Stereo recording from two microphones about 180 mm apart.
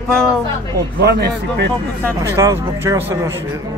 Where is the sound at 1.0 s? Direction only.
65° right (ahead or behind).